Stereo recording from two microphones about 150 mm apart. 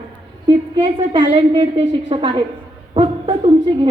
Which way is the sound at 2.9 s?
35° right (ahead or behind).